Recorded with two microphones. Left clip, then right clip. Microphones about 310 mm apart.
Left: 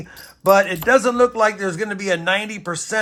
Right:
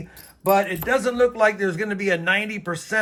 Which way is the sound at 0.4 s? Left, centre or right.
Left.